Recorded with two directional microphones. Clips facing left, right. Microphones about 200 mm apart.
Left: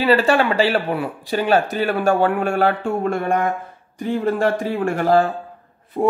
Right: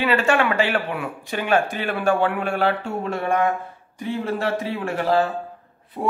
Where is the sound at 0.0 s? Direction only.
35° left (ahead or behind).